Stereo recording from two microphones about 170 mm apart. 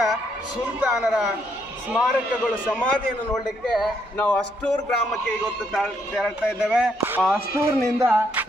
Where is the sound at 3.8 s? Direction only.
5° left (ahead or behind).